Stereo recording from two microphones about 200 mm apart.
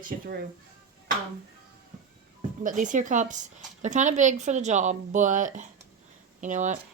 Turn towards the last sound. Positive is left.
turn(degrees=-35)  # may be behind; listen again after turning